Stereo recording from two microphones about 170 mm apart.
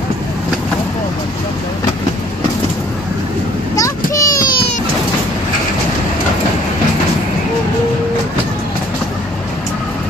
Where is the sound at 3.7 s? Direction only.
20° left (ahead or behind).